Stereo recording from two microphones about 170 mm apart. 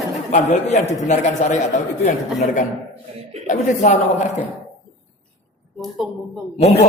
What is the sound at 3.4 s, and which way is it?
Speech, 45° left (ahead or behind).